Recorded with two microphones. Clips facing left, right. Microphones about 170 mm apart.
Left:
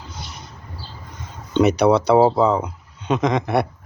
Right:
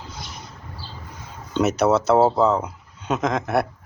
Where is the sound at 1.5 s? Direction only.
Centre (ahead or behind).